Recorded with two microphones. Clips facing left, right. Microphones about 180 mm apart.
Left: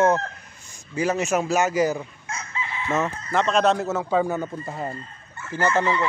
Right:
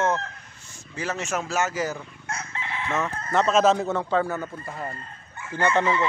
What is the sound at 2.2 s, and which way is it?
Chicken, 65° right (ahead or behind).